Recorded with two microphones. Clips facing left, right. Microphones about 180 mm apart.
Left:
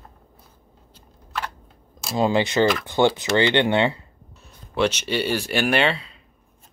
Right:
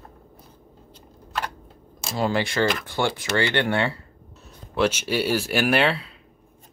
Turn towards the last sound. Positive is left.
turn(degrees=-5)  # may be behind; listen again after turning